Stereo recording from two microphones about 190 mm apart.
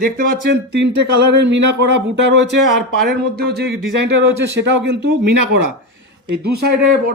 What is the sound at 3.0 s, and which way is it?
Speech, 55° right (ahead or behind).